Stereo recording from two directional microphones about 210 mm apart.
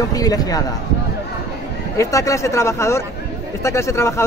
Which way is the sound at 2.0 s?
15° left (ahead or behind).